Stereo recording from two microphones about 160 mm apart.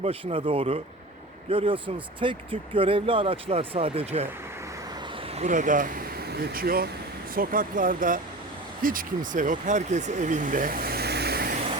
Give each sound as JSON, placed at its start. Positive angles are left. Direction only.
{"t": 0.0, "sound": "speech", "side_deg": -35}
{"t": 5.4, "sound": "speech", "side_deg": -55}
{"t": 6.3, "sound": "speech", "side_deg": -80}